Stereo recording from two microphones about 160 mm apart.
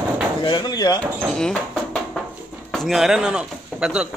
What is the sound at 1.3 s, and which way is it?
Speech, 5° left (ahead or behind).